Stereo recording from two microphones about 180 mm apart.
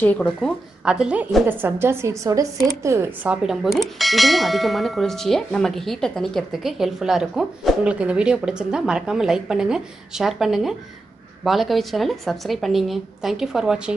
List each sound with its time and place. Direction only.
0.0 s speech: 10° left (ahead or behind)
0.8 s a woman's voice: 5° right (ahead or behind)
3.4 s clang: centre (ahead or behind)